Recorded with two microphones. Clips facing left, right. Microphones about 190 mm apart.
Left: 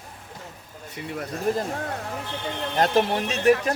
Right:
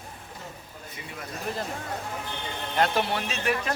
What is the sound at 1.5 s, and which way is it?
Speech, 45° left (ahead or behind).